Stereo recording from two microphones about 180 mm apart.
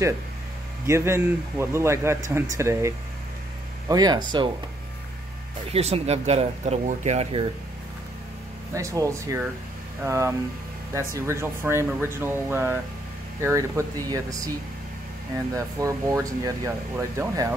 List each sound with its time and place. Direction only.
0.8 s a man's voice: 15° right (ahead or behind)
3.9 s speech: 25° right (ahead or behind)
5.7 s speech: 35° right (ahead or behind)
8.7 s a man's voice: 20° right (ahead or behind)
15.5 s a man's voice: 20° right (ahead or behind)